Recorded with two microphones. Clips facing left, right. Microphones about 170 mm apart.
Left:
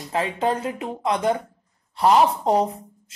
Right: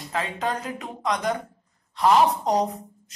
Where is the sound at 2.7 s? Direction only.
30° left (ahead or behind).